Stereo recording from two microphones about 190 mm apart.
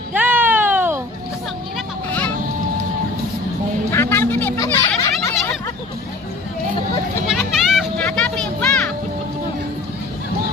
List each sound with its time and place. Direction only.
0.1 s a sound: 10° right (ahead or behind)
3.9 s music: 15° left (ahead or behind)
4.6 s children playing: 15° left (ahead or behind)
7.3 s music: centre (ahead or behind)